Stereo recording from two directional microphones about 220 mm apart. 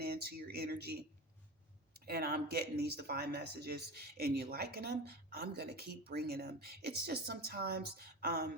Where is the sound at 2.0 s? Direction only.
45° right (ahead or behind).